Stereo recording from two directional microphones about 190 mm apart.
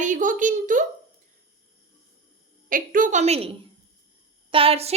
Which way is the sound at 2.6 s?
45° right (ahead or behind).